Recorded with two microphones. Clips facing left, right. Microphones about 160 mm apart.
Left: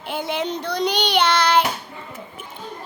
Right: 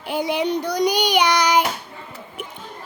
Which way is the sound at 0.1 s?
10° right (ahead or behind).